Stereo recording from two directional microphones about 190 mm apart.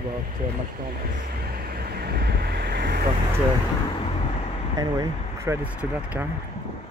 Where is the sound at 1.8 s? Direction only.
55° right (ahead or behind).